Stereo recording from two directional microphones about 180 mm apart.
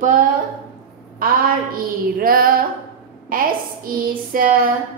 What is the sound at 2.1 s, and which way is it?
A woman's voice, 55° right (ahead or behind).